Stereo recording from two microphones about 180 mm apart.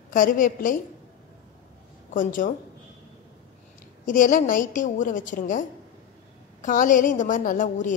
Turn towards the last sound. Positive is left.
turn(degrees=45)  # may be behind; listen again after turning